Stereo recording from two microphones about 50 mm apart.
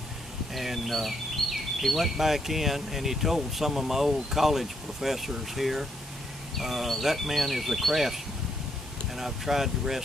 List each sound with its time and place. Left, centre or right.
0.6 s speech: centre